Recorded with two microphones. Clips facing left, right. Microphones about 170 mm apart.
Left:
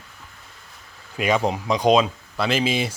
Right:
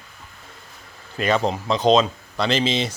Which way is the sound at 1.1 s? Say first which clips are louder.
Even; 10° left (ahead or behind).